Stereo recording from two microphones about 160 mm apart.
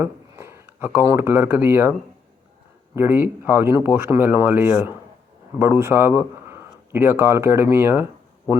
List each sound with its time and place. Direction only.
0.0 s speech: 15° right (ahead or behind)